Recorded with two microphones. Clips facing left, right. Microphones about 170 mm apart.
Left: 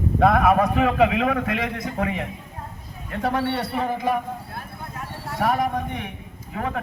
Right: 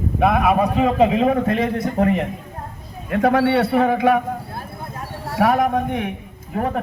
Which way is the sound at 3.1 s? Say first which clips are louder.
Right 8 dB; 65° right (ahead or behind).